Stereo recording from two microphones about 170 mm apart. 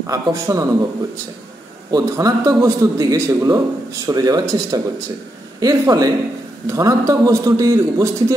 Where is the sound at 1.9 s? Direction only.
20° right (ahead or behind).